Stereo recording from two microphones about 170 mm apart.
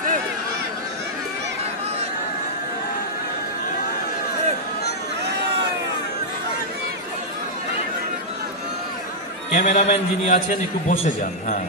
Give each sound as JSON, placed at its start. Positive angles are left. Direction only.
{"t": 9.5, "sound": "a man's voice", "side_deg": 45}